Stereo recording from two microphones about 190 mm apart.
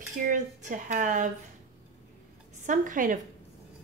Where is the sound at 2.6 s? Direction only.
40° right (ahead or behind).